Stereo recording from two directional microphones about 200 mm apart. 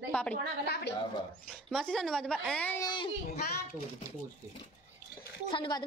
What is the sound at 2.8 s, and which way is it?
Speech, 25° left (ahead or behind).